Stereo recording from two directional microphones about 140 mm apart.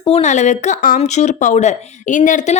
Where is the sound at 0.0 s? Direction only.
50° left (ahead or behind); by 0.9 s 65° left (ahead or behind).